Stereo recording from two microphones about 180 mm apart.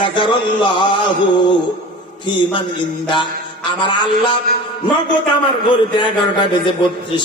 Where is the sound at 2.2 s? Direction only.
25° left (ahead or behind).